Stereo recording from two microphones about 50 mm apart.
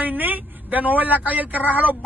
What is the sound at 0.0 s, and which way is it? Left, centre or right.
A man's voice, right.